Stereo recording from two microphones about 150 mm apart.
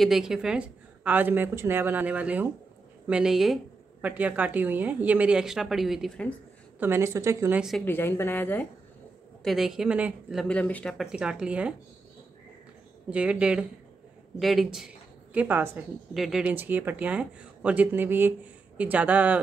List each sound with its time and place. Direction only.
0.0 s speech: 5° right (ahead or behind)
6.8 s a woman's voice: 15° right (ahead or behind)
7.8 s a woman's voice: 15° left (ahead or behind)
9.4 s speech: centre (ahead or behind)
10.4 s speech: 10° left (ahead or behind)
13.1 s speech: 5° right (ahead or behind)
16.1 s speech: 5° right (ahead or behind)